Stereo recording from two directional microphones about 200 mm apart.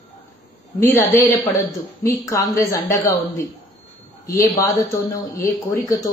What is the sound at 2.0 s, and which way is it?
Speech, 15° left (ahead or behind).